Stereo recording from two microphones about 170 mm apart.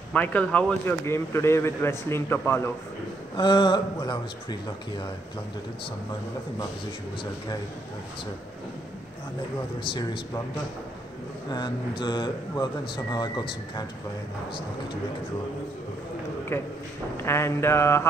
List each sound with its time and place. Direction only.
0.1 s speech: 10° left (ahead or behind)
3.3 s speech: 25° left (ahead or behind)
9.8 s speech: 25° left (ahead or behind)
11.5 s speech: 25° left (ahead or behind)
17.2 s speech: 15° left (ahead or behind)